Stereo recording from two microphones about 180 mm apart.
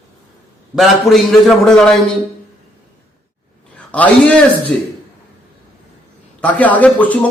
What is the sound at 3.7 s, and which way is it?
Speech, 5° left (ahead or behind).